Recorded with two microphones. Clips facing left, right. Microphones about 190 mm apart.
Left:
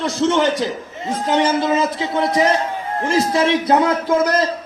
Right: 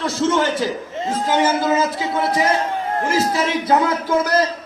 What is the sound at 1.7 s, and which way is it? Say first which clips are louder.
A man's voice: left 1 dB; 25° left (ahead or behind).